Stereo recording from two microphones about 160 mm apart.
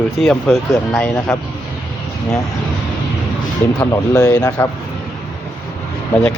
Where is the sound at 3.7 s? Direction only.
20° left (ahead or behind).